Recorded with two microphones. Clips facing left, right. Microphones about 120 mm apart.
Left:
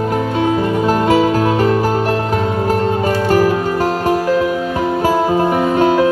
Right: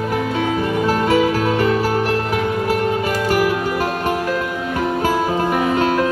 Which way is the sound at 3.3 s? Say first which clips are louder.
Left 4 dB; 40° left (ahead or behind).